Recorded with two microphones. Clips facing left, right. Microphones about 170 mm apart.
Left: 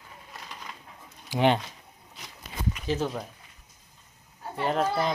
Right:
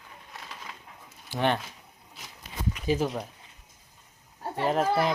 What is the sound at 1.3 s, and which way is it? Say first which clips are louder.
Speech: left 4 dB; 15° left (ahead or behind).